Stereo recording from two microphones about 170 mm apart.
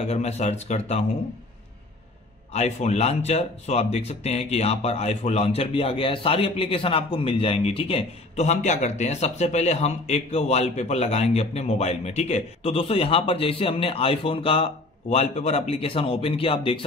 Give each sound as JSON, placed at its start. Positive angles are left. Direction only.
{"t": 0.0, "sound": "speech", "side_deg": 40}
{"t": 2.5, "sound": "speech", "side_deg": 40}